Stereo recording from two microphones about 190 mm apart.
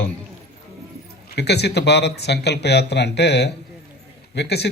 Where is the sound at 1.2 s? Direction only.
60° left (ahead or behind).